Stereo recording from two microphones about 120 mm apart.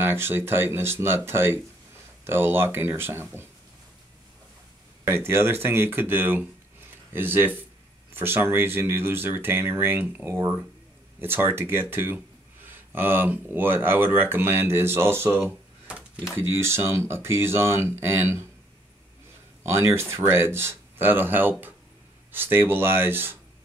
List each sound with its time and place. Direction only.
0.0 s speech: 20° right (ahead or behind)
5.0 s speech: 20° right (ahead or behind)
19.6 s speech: 25° right (ahead or behind)